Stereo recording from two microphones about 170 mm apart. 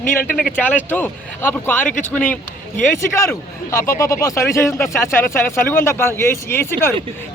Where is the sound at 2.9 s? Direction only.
15° left (ahead or behind).